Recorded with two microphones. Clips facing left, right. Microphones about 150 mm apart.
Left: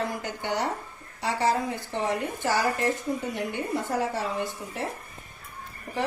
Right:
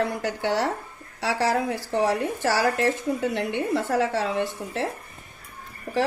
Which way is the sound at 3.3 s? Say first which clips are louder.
Right 4 dB; 70° right (ahead or behind).